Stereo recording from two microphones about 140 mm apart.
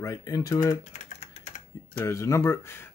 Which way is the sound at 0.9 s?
60° left (ahead or behind).